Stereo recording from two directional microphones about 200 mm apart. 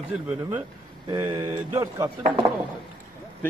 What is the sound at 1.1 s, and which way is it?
Speech, 15° right (ahead or behind).